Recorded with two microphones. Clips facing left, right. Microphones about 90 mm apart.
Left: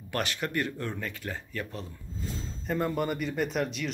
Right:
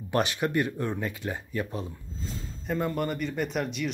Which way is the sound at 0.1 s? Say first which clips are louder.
Right 5 dB; 20° right (ahead or behind).